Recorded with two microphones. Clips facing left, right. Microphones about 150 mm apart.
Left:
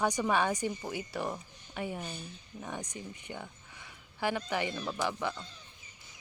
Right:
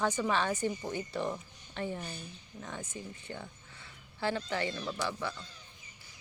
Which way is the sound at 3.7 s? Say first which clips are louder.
Left 2 dB; 15° left (ahead or behind).